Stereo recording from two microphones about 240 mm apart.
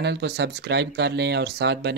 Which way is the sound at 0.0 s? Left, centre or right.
Right.